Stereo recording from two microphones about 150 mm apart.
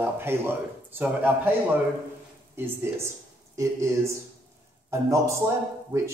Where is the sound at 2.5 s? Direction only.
15° right (ahead or behind).